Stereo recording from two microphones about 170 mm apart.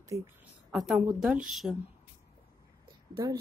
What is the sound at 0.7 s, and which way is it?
A woman's voice, 5° right (ahead or behind).